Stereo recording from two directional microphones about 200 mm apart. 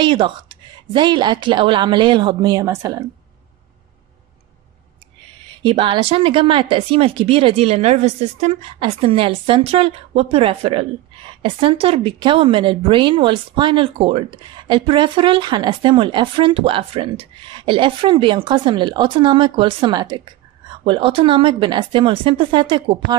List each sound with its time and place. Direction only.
0.0 s a woman's voice: 25° right (ahead or behind)
5.6 s a woman's voice: 25° right (ahead or behind)